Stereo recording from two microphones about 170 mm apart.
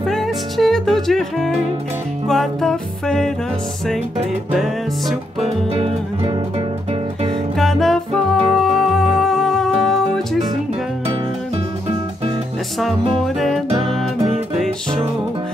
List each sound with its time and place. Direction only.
0.0 s music: centre (ahead or behind)
5.8 s music: 30° right (ahead or behind)
7.5 s music: centre (ahead or behind)